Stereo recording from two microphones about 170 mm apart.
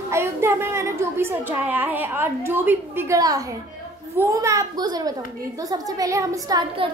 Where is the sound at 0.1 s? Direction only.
15° right (ahead or behind).